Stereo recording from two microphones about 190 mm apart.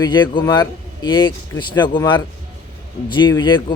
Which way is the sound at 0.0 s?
25° left (ahead or behind).